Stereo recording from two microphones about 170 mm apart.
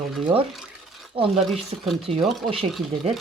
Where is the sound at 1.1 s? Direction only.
35° right (ahead or behind).